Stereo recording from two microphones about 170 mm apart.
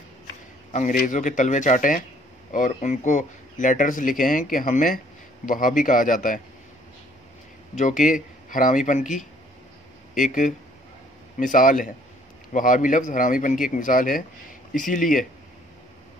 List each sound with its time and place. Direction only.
0.7 s speech: 50° left (ahead or behind)
7.7 s speech: 50° left (ahead or behind)